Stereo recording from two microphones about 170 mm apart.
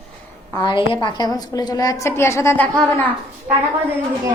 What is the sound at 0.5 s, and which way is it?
A woman's voice, 30° left (ahead or behind).